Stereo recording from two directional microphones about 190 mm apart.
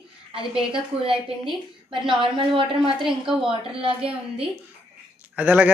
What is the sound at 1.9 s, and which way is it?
Speech, 25° right (ahead or behind).